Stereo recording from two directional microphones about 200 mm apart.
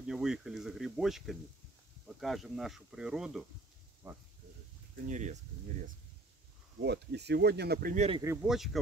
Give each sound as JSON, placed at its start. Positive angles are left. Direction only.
{"t": 0.0, "sound": "speech", "side_deg": -5}
{"t": 5.0, "sound": "speech", "side_deg": -35}
{"t": 6.8, "sound": "speech", "side_deg": -55}
{"t": 8.2, "sound": "speech", "side_deg": -15}